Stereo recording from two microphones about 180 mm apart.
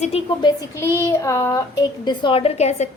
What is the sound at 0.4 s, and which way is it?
A woman's voice, 15° left (ahead or behind).